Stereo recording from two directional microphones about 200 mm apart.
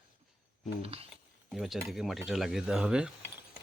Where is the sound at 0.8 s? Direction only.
30° right (ahead or behind).